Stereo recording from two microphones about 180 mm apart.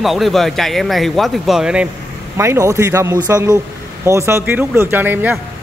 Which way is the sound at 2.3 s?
15° right (ahead or behind).